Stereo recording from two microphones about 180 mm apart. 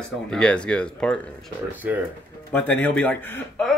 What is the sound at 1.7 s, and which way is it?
Speech, 10° right (ahead or behind).